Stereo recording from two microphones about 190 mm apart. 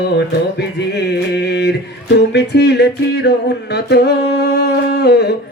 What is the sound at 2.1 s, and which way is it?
Music, 65° left (ahead or behind).